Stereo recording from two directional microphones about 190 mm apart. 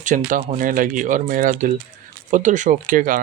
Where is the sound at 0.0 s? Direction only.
45° right (ahead or behind).